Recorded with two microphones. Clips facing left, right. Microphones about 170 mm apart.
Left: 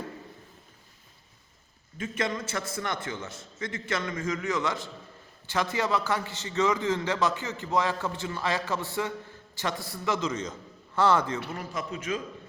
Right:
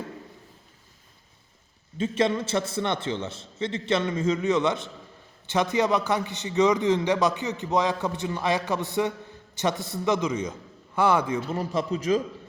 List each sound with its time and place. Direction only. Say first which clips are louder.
2.0 s a man's voice: right 7 dB; 25° right (ahead or behind)
11.5 s speech: right 8 dB; 30° right (ahead or behind)